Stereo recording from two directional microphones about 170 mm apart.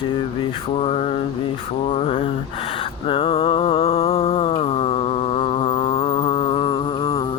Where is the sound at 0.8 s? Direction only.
35° left (ahead or behind).